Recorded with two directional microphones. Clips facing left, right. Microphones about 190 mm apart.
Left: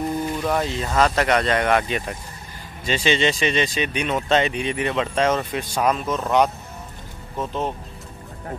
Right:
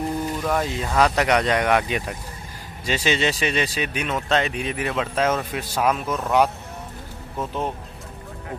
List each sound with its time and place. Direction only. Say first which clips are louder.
0.6 s speech: right 1 dB; 5° right (ahead or behind)